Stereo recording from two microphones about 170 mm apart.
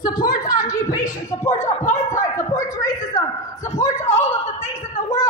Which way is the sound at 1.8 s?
45° left (ahead or behind).